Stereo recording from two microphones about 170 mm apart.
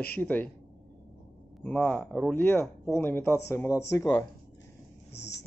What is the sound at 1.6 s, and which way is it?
Speech, 10° left (ahead or behind).